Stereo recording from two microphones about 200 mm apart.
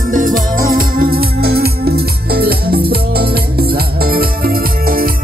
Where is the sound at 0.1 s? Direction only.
40° right (ahead or behind).